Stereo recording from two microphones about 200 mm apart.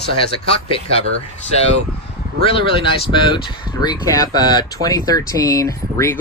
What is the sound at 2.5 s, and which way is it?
Speech, 25° left (ahead or behind).